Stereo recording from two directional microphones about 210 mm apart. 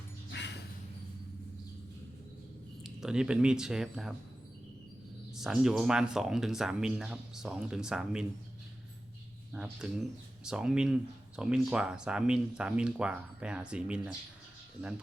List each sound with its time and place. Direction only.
0.3 s dog: 55° left (ahead or behind)
2.8 s speech: 5° right (ahead or behind)
5.4 s speech: centre (ahead or behind)
9.5 s speech: 5° right (ahead or behind)